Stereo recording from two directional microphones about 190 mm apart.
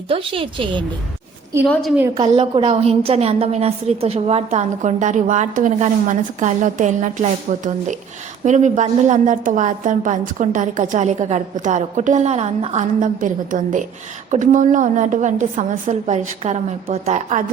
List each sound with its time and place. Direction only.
0.1 s a woman's voice: 30° right (ahead or behind)
1.6 s a woman's voice: 5° left (ahead or behind)
2.1 s a woman's voice: 25° right (ahead or behind)